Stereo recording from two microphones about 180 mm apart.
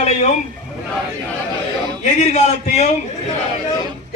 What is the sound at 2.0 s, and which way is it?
Speech, 40° left (ahead or behind).